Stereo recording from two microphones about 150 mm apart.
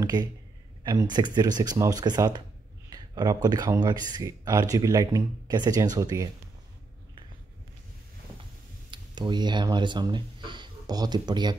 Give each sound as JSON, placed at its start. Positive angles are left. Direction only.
{"t": 0.0, "sound": "speech", "side_deg": -25}
{"t": 8.9, "sound": "speech", "side_deg": -30}